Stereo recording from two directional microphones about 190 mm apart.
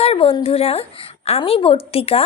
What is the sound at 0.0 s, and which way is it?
A woman's voice, 30° left (ahead or behind).